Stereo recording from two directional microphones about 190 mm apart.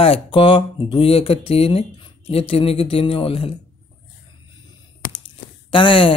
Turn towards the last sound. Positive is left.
turn(degrees=25)  # may be behind; listen again after turning